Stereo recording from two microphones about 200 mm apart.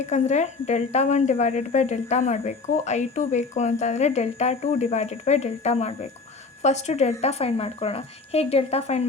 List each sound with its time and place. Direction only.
0.0 s a woman's voice: 35° left (ahead or behind)